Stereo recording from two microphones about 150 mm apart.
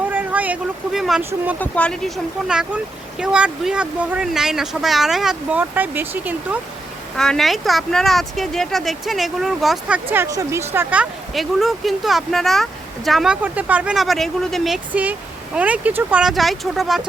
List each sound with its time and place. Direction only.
0.1 s speech: 10° right (ahead or behind)
1.2 s speech: 15° right (ahead or behind)
1.5 s speech: 10° left (ahead or behind); by 6.6 s 10° right (ahead or behind)
7.2 s speech: 5° left (ahead or behind)
10.1 s speech: 20° right (ahead or behind)
16.2 s speech: centre (ahead or behind)